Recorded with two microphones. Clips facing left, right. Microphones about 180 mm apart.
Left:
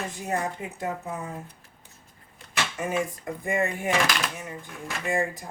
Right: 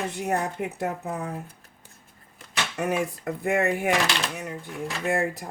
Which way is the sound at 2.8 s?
65° right (ahead or behind).